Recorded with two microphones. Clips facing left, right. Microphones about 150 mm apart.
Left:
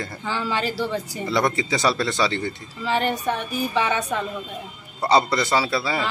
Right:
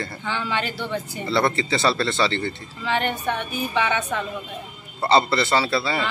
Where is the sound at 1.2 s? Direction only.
15° left (ahead or behind).